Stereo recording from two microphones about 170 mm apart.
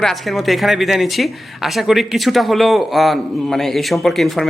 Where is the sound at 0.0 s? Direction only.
Centre (ahead or behind).